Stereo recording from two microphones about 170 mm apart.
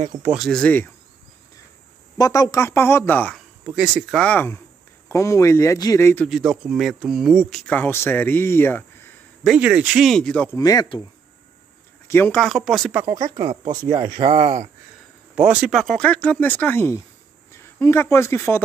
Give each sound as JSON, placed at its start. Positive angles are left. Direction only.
{"t": 0.3, "sound": "speech", "side_deg": 0}
{"t": 2.1, "sound": "speech", "side_deg": 20}
{"t": 3.6, "sound": "speech", "side_deg": -5}
{"t": 6.2, "sound": "speech", "side_deg": -5}
{"t": 9.4, "sound": "speech", "side_deg": -5}
{"t": 10.6, "sound": "speech", "side_deg": 20}
{"t": 12.1, "sound": "speech", "side_deg": 10}
{"t": 12.4, "sound": "speech", "side_deg": 0}
{"t": 13.9, "sound": "speech", "side_deg": -30}
{"t": 15.3, "sound": "speech", "side_deg": -5}